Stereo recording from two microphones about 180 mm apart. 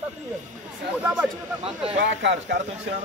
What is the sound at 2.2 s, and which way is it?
Speech, 75° right (ahead or behind).